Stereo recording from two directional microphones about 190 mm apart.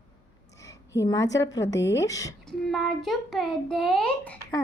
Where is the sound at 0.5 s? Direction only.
15° left (ahead or behind).